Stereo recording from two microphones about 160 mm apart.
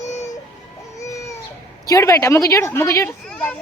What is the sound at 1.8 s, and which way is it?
A woman's voice, 20° left (ahead or behind).